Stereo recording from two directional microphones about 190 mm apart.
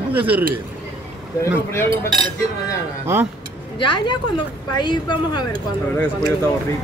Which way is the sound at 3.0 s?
10° right (ahead or behind).